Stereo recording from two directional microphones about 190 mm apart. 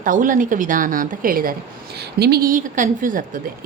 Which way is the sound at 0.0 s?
45° right (ahead or behind).